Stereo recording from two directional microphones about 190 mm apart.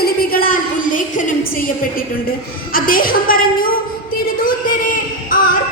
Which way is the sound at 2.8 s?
50° left (ahead or behind).